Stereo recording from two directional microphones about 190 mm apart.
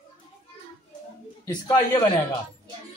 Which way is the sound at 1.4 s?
20° left (ahead or behind).